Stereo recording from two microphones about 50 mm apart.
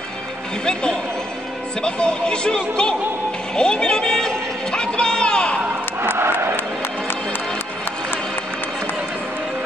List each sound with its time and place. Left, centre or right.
1.8 s speech: centre
3.5 s a sound: centre
6.1 s vehicle: right